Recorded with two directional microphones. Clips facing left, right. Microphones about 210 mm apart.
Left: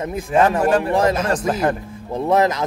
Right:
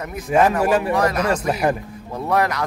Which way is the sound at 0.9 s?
25° left (ahead or behind).